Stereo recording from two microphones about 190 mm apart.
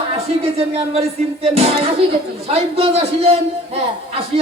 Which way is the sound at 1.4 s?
35° right (ahead or behind).